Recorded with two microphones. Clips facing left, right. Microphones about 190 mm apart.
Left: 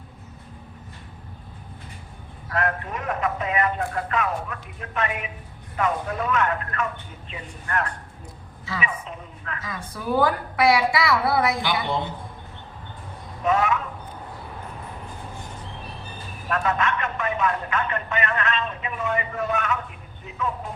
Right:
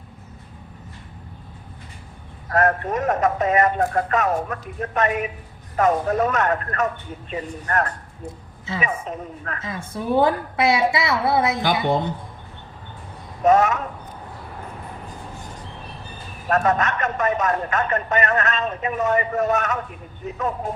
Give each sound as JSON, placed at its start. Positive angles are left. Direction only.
{"t": 2.5, "sound": "speech", "side_deg": -40}
{"t": 9.6, "sound": "a woman's voice", "side_deg": -25}
{"t": 13.4, "sound": "speech", "side_deg": -40}
{"t": 16.5, "sound": "speech", "side_deg": -45}